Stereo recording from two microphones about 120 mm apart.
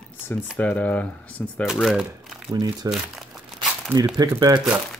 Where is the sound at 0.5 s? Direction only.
10° left (ahead or behind).